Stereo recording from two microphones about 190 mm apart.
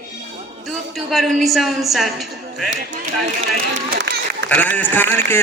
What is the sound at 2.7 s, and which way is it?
Speech, 70° right (ahead or behind).